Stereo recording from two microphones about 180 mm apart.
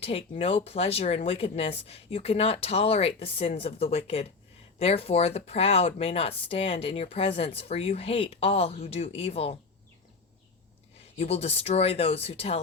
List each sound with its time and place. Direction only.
0.0 s speech: 30° left (ahead or behind)
11.2 s speech: 35° left (ahead or behind)